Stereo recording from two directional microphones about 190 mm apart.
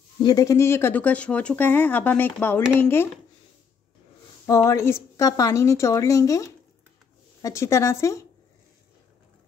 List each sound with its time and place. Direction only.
0.2 s speech: 20° left (ahead or behind)
4.6 s speech: 15° left (ahead or behind)